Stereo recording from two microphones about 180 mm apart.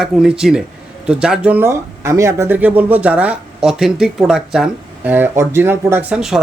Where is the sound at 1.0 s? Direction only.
5° right (ahead or behind).